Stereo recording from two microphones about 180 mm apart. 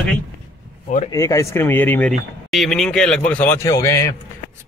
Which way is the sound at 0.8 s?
45° left (ahead or behind).